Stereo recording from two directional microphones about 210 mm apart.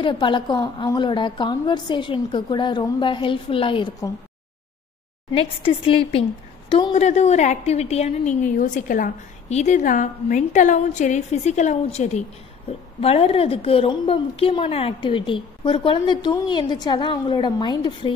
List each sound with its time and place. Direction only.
0.0 s a woman's voice: 25° left (ahead or behind)
5.3 s a woman's voice: 25° left (ahead or behind)